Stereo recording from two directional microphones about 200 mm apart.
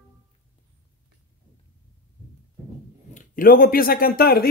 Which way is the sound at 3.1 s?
45° left (ahead or behind).